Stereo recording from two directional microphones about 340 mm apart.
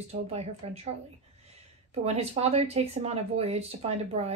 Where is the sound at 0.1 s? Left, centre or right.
Centre.